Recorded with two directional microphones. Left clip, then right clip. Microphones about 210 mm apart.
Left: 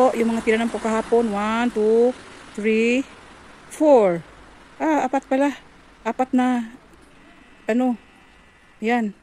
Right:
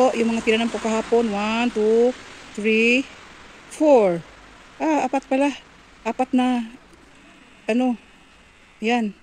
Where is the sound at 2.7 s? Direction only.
30° left (ahead or behind).